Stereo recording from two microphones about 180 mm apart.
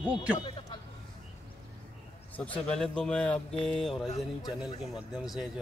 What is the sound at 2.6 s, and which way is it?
Speech, 5° left (ahead or behind).